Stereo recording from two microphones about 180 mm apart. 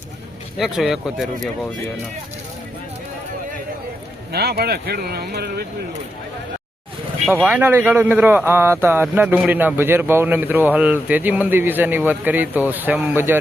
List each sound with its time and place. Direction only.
0.6 s speech: centre (ahead or behind)
4.3 s speech: 60° right (ahead or behind)
7.4 s speech: 10° right (ahead or behind)